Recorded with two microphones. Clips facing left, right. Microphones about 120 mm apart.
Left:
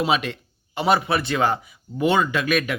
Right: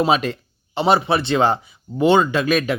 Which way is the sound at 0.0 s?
40° right (ahead or behind).